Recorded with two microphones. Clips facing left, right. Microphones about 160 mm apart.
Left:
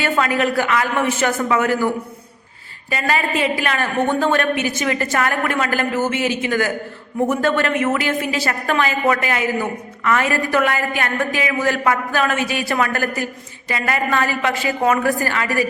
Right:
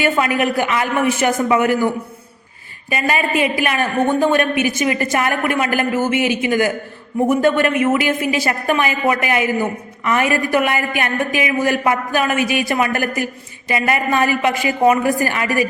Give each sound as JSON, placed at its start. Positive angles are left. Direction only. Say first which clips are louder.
{"t": 0.0, "sound": "a woman's voice", "louder": "right 2 dB", "side_deg": -15}
{"t": 2.9, "sound": "a woman's voice", "louder": "right 2 dB", "side_deg": -15}